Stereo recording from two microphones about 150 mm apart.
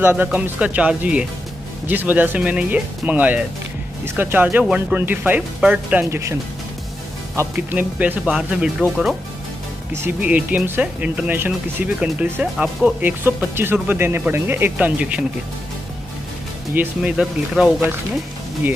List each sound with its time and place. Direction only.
0.0 s speech: 15° right (ahead or behind)
6.0 s speech: 20° right (ahead or behind)
7.5 s speech: 10° right (ahead or behind)
9.9 s speech: 10° right (ahead or behind)
16.7 s speech: 5° right (ahead or behind)